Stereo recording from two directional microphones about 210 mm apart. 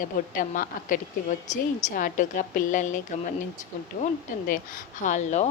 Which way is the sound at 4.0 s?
40° left (ahead or behind).